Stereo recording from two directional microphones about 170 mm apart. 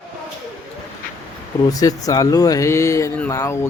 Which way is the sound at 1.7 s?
20° left (ahead or behind).